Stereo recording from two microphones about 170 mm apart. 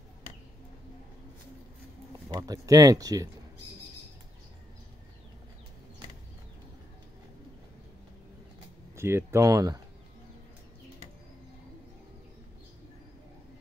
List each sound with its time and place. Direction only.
2.2 s speech: 20° right (ahead or behind)
8.9 s speech: 15° right (ahead or behind)